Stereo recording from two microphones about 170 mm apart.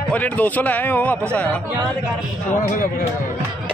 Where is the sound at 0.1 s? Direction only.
10° left (ahead or behind).